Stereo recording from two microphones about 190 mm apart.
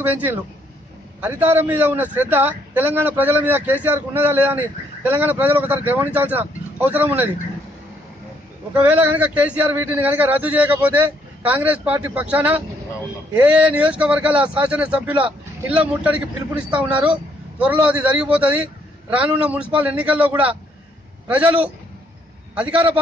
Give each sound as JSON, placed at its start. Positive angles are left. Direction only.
{"t": 0.0, "sound": "a man's voice", "side_deg": -10}
{"t": 8.7, "sound": "a man's voice", "side_deg": -10}
{"t": 22.6, "sound": "a man's voice", "side_deg": -5}